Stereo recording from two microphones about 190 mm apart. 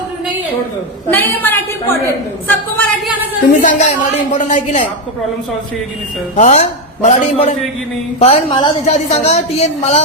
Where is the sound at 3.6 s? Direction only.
40° left (ahead or behind).